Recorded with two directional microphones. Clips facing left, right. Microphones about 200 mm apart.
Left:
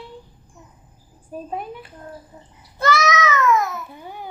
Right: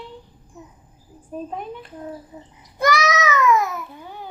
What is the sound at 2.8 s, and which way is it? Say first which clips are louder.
Baby cry: even; 15° right (ahead or behind).